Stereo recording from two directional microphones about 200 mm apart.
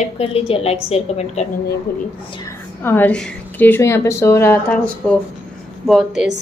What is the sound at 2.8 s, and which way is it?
A woman's voice, 10° left (ahead or behind).